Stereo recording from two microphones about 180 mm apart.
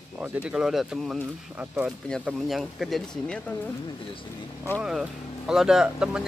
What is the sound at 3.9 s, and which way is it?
Speech, 25° left (ahead or behind).